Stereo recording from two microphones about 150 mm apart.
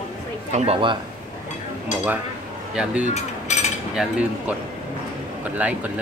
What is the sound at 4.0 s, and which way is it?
Speech, centre (ahead or behind).